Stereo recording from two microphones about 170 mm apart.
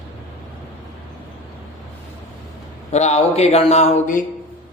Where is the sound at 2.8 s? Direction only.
40° left (ahead or behind).